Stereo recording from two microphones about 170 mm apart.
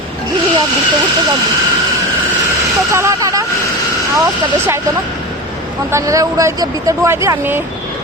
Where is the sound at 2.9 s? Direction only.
15° right (ahead or behind).